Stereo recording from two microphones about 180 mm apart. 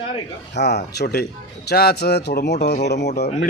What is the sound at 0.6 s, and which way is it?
Speech, 65° left (ahead or behind).